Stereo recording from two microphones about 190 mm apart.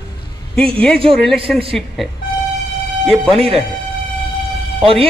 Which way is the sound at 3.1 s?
Centre (ahead or behind).